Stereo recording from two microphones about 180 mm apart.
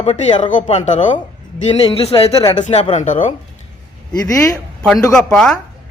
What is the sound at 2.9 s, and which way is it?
Speech, 45° left (ahead or behind).